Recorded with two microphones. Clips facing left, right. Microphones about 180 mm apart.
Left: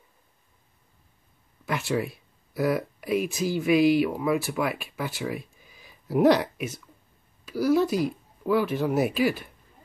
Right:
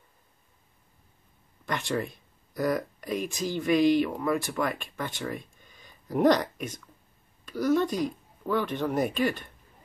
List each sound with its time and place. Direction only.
1.7 s speech: 5° left (ahead or behind)